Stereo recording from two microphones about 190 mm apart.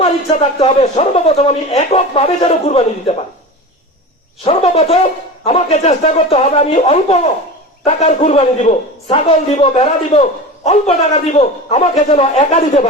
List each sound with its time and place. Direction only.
0.0 s a man's voice: 30° left (ahead or behind)
4.4 s a man's voice: 30° left (ahead or behind)